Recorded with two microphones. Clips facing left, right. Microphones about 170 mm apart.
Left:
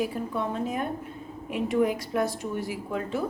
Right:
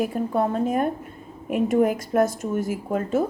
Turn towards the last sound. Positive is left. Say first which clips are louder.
# right 6 dB
turn(degrees=-45)  # may be behind; listen again after turning